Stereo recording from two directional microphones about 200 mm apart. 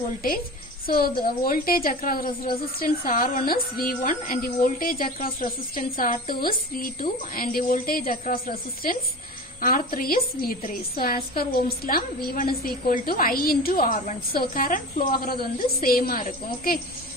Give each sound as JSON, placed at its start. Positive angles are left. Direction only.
{"t": 0.8, "sound": "a woman's voice", "side_deg": 50}